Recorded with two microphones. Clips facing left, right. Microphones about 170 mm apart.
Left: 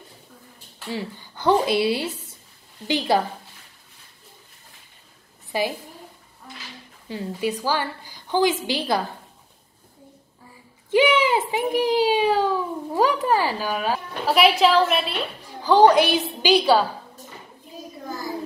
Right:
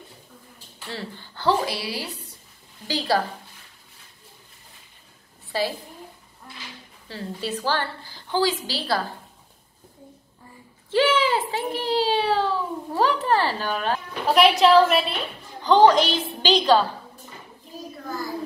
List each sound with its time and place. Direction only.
0.8 s a woman's voice: 15° left (ahead or behind)
5.5 s a child's voice: 15° left (ahead or behind)
7.1 s a child's voice: 15° left (ahead or behind)
10.9 s a sound: 15° left (ahead or behind)
11.5 s a child's voice: 15° left (ahead or behind)
18.0 s a sound: 20° left (ahead or behind)